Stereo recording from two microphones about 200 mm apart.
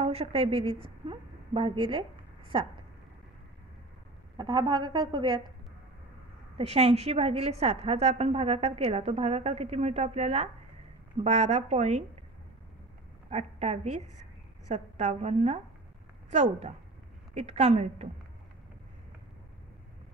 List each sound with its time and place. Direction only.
0.0 s a woman's voice: 30° right (ahead or behind)
4.4 s a woman's voice: 20° right (ahead or behind)
6.6 s a woman's voice: 30° right (ahead or behind)
13.3 s a woman's voice: 30° right (ahead or behind)